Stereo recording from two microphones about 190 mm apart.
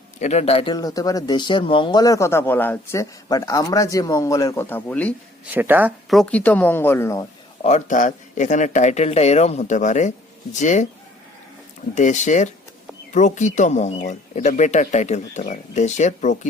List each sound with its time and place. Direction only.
0.2 s a man's voice: 35° left (ahead or behind); by 5.1 s 10° left (ahead or behind)
5.5 s a woman's voice: 10° right (ahead or behind); by 7.3 s 15° left (ahead or behind)
7.6 s speech: 40° left (ahead or behind)
11.9 s speech: 40° left (ahead or behind)